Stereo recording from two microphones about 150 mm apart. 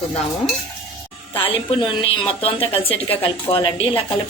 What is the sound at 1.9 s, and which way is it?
A woman's voice, 35° left (ahead or behind).